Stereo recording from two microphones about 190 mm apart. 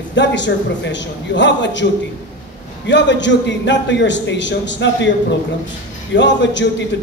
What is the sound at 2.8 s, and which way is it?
A man's voice, 70° left (ahead or behind).